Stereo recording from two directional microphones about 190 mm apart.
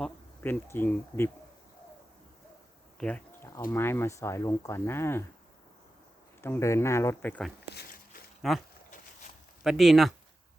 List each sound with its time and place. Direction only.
0.0 s speech: 10° left (ahead or behind)
3.0 s insect: 10° left (ahead or behind)
3.7 s speech: 10° left (ahead or behind)
6.4 s speech: 15° left (ahead or behind)
7.7 s a sound: 55° left (ahead or behind)
8.4 s speech: centre (ahead or behind)
9.6 s speech: centre (ahead or behind)